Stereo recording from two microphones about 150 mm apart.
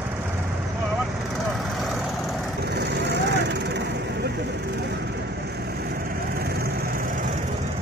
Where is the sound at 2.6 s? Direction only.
90° right; by 7.3 s 65° right (ahead or behind).